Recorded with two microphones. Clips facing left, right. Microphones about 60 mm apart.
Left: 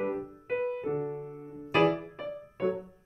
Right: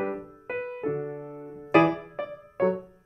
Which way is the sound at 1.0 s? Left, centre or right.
Right.